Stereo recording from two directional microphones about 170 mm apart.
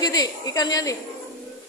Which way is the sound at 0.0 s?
20° left (ahead or behind).